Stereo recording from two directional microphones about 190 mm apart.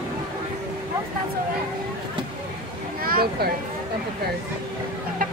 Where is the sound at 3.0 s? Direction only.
50° right (ahead or behind).